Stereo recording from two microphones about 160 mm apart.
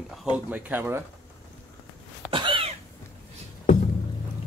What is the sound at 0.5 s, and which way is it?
Speech, 10° right (ahead or behind).